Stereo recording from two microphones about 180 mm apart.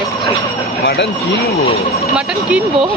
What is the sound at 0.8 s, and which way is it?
Speech, 65° left (ahead or behind).